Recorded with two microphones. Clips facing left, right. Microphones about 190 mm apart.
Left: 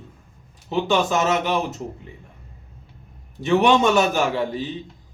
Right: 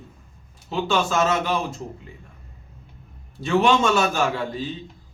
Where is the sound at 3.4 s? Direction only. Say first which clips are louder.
Left 2 dB; 15° left (ahead or behind).